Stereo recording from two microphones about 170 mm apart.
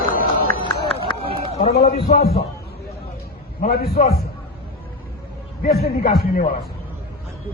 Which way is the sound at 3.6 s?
65° left (ahead or behind).